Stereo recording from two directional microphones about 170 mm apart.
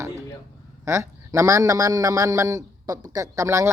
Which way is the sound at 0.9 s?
15° right (ahead or behind).